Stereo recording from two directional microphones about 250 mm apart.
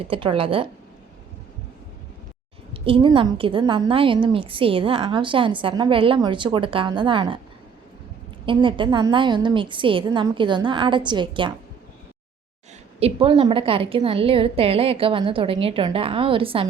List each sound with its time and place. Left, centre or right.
0.0 s a woman's voice: right
2.8 s a woman's voice: right
8.4 s a woman's voice: centre
13.0 s a woman's voice: right